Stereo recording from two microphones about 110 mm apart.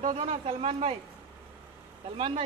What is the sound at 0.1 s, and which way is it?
Speech, 90° right.